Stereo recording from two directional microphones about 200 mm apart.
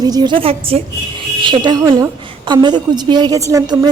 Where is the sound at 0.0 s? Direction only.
20° right (ahead or behind).